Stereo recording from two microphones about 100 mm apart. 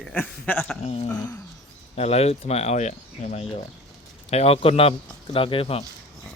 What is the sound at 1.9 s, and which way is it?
Speech, 90° left.